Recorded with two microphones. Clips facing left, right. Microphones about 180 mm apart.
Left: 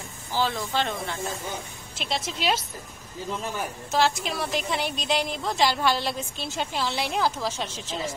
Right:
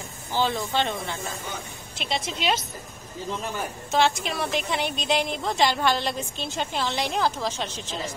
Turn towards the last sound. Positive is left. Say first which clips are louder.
# right 1 dB
turn(degrees=5)  # may be behind; listen again after turning